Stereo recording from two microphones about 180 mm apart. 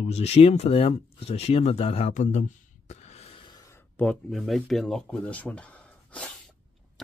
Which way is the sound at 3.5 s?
15° left (ahead or behind).